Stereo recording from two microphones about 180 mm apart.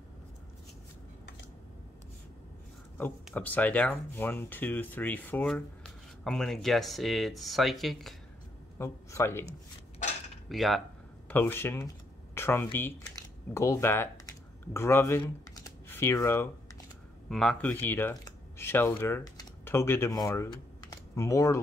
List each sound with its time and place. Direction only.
3.3 s speech: 10° left (ahead or behind)
8.7 s speech: 15° left (ahead or behind)
10.5 s speech: centre (ahead or behind)
11.2 s speech: 10° left (ahead or behind)
12.4 s a sound: 15° left (ahead or behind)
12.7 s speech: 15° left (ahead or behind)
17.3 s speech: 5° left (ahead or behind)